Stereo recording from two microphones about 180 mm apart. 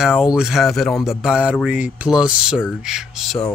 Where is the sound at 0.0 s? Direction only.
5° right (ahead or behind).